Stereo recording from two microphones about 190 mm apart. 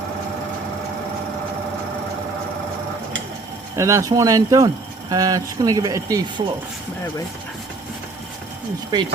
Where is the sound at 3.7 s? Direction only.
15° right (ahead or behind).